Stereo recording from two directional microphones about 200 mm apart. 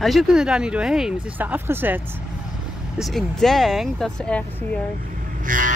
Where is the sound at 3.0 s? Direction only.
Centre (ahead or behind).